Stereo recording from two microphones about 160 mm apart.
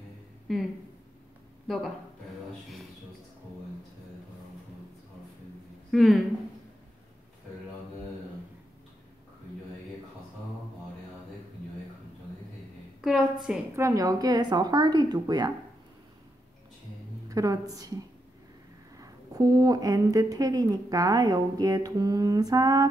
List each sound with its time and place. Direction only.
0.5 s speech: centre (ahead or behind)
5.9 s speech: centre (ahead or behind)
13.0 s a sound: 5° right (ahead or behind)
13.7 s a woman's voice: 20° right (ahead or behind)
17.3 s a woman's voice: 20° right (ahead or behind)